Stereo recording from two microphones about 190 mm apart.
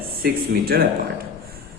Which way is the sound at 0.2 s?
50° right (ahead or behind).